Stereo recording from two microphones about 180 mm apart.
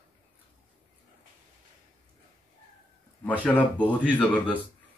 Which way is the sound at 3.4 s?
10° left (ahead or behind).